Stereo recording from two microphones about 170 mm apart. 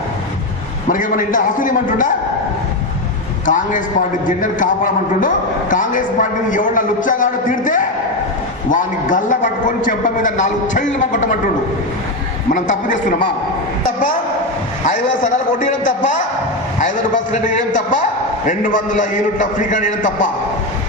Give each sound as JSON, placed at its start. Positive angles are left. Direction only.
{"t": 0.9, "sound": "a man's voice", "side_deg": 50}
{"t": 3.4, "sound": "a man's voice", "side_deg": 50}
{"t": 5.7, "sound": "a man's voice", "side_deg": 50}
{"t": 12.5, "sound": "a man's voice", "side_deg": 50}
{"t": 14.8, "sound": "a man's voice", "side_deg": 50}
{"t": 17.3, "sound": "a man's voice", "side_deg": 45}